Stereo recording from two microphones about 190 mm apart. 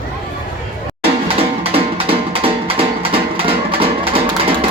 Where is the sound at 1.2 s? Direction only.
30° right (ahead or behind).